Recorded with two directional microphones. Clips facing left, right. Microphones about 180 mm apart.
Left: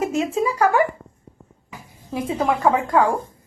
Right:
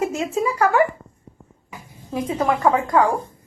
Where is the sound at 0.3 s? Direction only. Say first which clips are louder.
Even; 30° left (ahead or behind).